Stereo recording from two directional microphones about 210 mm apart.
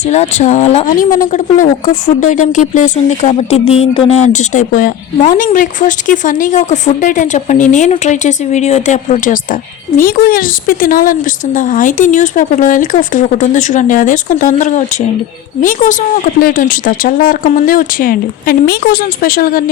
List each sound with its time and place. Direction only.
0.0 s speech: 30° left (ahead or behind)
4.3 s speech: 35° left (ahead or behind)